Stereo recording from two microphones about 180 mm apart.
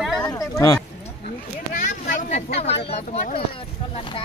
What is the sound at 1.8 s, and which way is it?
Speech, 45° left (ahead or behind).